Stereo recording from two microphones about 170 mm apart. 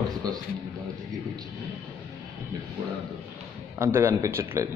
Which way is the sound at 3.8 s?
15° right (ahead or behind).